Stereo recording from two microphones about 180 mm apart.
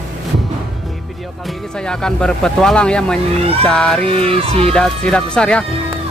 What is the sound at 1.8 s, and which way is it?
Speech, 5° left (ahead or behind).